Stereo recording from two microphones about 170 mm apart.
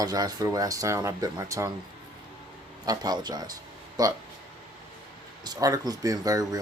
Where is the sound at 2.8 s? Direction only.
25° right (ahead or behind).